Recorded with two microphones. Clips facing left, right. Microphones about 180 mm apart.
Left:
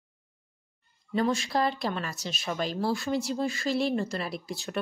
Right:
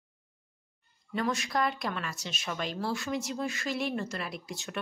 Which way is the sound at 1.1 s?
30° left (ahead or behind).